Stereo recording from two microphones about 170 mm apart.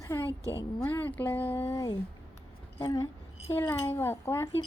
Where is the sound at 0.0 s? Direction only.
15° left (ahead or behind).